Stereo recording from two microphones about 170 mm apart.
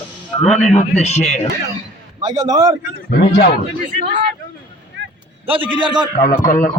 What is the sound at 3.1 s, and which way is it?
Speech, 70° left (ahead or behind).